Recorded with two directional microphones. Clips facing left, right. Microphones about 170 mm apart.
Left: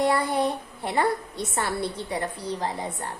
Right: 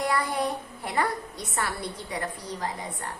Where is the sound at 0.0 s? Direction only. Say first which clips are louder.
Left 4 dB; 25° left (ahead or behind).